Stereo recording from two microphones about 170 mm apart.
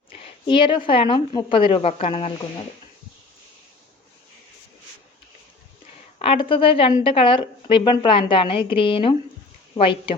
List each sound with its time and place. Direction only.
0.1 s a woman's voice: 30° left (ahead or behind)
6.1 s a woman's voice: 30° left (ahead or behind)